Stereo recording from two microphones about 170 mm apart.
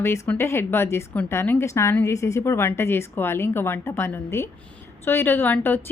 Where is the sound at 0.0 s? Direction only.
15° left (ahead or behind).